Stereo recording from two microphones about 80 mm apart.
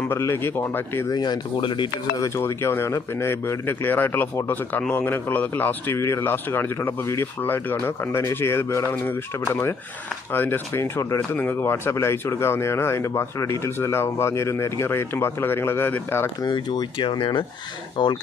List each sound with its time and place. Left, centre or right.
0.1 s a man's voice: left
1.1 s speech: left
2.1 s a man's voice: left
5.9 s speech: left
16.4 s speech: left
18.0 s speech: left